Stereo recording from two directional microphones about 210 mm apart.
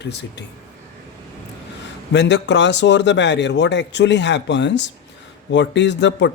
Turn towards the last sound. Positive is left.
turn(degrees=55)  # may be behind; listen again after turning